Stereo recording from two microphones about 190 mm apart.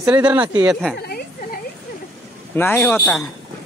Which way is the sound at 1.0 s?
55° left (ahead or behind).